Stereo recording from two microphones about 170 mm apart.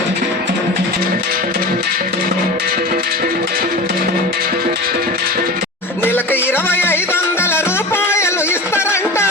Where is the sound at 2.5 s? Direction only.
70° right (ahead or behind).